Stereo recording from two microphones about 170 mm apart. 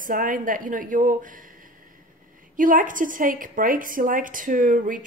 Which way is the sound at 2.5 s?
50° right (ahead or behind).